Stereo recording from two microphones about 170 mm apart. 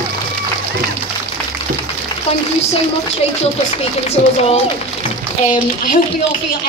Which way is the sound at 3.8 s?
40° left (ahead or behind).